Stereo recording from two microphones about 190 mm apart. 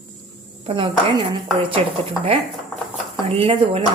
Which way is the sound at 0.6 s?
25° right (ahead or behind).